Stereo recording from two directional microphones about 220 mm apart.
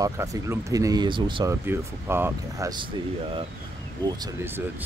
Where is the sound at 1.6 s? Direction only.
10° right (ahead or behind).